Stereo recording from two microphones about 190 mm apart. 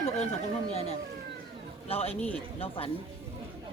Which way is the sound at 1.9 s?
30° left (ahead or behind).